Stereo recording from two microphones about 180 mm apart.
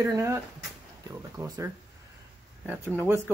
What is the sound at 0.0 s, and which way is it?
Speech, 15° right (ahead or behind).